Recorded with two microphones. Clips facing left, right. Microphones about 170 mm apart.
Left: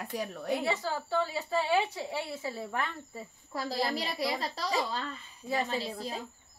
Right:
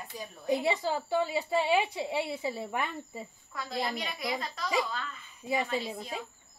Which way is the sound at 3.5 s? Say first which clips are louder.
Left 2 dB; 30° left (ahead or behind).